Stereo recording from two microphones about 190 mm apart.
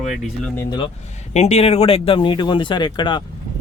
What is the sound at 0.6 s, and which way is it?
Speech, 20° left (ahead or behind).